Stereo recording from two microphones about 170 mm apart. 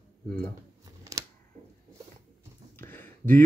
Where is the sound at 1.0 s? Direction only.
20° right (ahead or behind).